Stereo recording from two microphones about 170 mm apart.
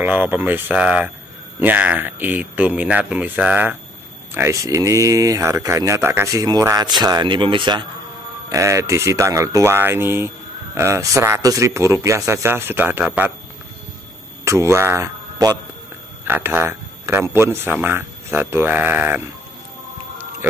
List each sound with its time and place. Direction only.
0.0 s speech: 10° right (ahead or behind); by 7.8 s 30° right (ahead or behind)
8.5 s speech: 15° right (ahead or behind)
14.4 s speech: 15° right (ahead or behind)
16.3 s speech: 10° right (ahead or behind)